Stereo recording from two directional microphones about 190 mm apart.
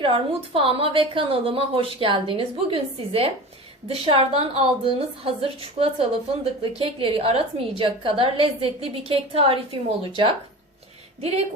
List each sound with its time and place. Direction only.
0.0 s a woman's voice: 30° right (ahead or behind)
11.2 s speech: 35° right (ahead or behind)